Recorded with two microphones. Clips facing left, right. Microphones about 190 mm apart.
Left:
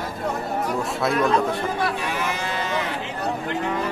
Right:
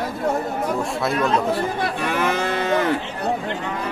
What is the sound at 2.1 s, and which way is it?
Cattle, 55° right (ahead or behind).